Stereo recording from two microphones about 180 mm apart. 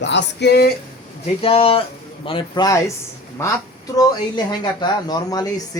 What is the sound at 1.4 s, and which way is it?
Speech, 30° left (ahead or behind).